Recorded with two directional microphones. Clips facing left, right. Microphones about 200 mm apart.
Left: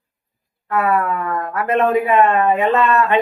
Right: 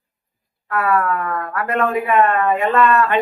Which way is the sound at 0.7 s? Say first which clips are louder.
Left 1 dB; 20° left (ahead or behind).